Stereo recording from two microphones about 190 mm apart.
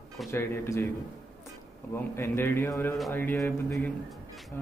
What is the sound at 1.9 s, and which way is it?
Speech, 15° left (ahead or behind).